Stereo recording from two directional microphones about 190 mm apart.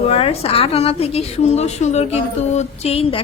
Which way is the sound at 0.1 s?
30° left (ahead or behind).